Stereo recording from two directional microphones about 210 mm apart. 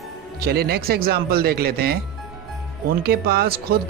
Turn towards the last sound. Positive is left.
turn(degrees=-45)  # may be behind; listen again after turning